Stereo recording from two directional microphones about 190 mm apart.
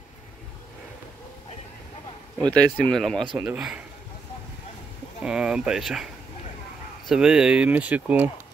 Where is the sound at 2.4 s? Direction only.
5° left (ahead or behind).